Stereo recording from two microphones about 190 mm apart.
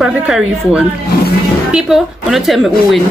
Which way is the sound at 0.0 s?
5° right (ahead or behind).